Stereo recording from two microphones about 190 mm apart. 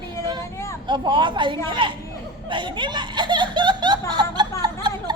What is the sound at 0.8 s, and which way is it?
A woman's voice, 25° right (ahead or behind).